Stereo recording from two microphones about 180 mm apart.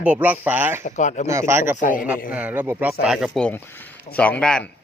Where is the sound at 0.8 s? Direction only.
40° left (ahead or behind).